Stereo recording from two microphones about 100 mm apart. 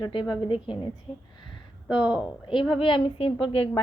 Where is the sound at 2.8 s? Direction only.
60° left (ahead or behind).